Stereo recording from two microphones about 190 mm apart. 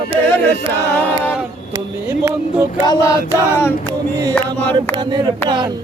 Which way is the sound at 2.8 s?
20° left (ahead or behind).